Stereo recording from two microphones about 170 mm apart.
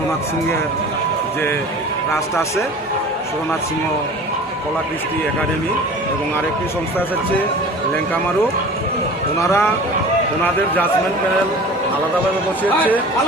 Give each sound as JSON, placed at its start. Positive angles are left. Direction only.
{"t": 9.4, "sound": "speech", "side_deg": 15}
{"t": 12.6, "sound": "speech", "side_deg": 10}